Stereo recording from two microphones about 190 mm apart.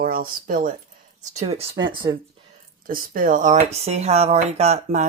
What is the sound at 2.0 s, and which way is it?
Speech, 15° right (ahead or behind).